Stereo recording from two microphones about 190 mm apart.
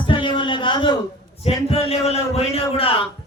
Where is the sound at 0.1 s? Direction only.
25° left (ahead or behind).